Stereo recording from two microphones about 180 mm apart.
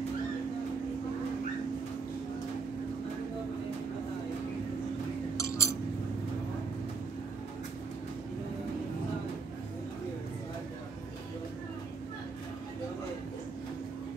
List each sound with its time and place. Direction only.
5.4 s chink: 15° left (ahead or behind)